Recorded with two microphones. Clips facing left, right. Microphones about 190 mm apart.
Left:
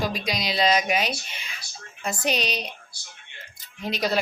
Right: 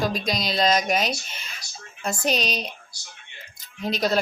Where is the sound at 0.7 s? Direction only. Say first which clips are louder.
Right 1 dB; 40° right (ahead or behind).